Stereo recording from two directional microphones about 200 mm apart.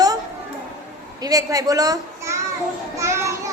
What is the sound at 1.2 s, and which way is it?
A child's voice, 15° right (ahead or behind).